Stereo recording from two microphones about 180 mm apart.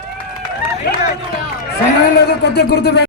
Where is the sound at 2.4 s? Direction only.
65° left (ahead or behind).